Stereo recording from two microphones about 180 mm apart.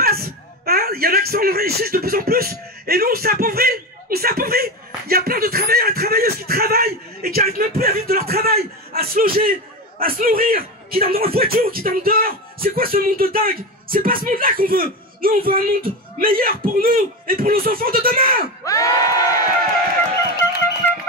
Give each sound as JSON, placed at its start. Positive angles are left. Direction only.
{"t": 0.0, "sound": "a man's voice", "side_deg": -60}
{"t": 18.6, "sound": "crowd", "side_deg": 20}